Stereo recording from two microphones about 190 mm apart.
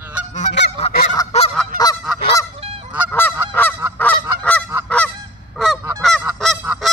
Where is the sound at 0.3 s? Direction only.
40° left (ahead or behind).